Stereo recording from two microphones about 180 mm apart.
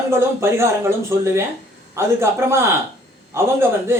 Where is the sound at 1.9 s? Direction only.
15° right (ahead or behind).